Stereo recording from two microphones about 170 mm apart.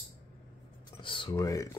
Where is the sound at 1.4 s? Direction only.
20° left (ahead or behind).